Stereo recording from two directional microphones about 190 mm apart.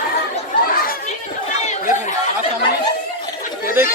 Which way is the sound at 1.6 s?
40° left (ahead or behind).